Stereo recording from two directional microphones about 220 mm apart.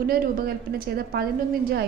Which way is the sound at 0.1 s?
45° right (ahead or behind).